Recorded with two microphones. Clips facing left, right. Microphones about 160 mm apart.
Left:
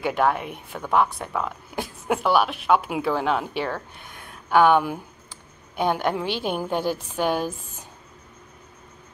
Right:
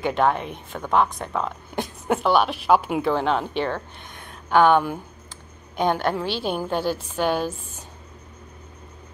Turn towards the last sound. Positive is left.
turn(degrees=10)  # may be behind; listen again after turning